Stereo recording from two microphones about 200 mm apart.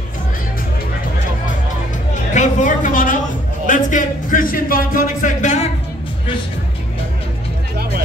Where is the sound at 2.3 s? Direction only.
40° left (ahead or behind).